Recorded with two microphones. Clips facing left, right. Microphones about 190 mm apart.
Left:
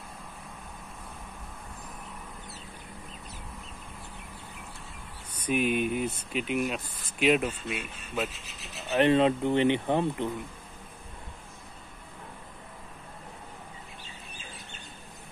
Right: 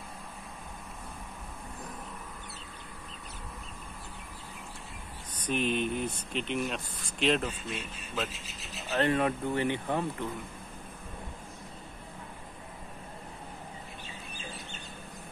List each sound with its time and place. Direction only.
5.3 s speech: 10° left (ahead or behind)
8.9 s speech: 20° left (ahead or behind)